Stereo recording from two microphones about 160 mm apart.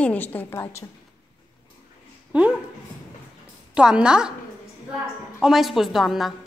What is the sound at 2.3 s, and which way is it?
Speech, 10° right (ahead or behind).